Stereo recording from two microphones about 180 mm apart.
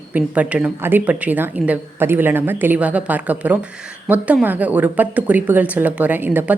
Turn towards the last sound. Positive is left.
turn(degrees=-10)  # may be behind; listen again after turning